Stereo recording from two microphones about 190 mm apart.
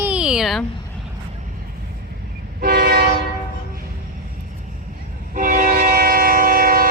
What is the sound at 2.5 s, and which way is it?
Train, 55° right (ahead or behind).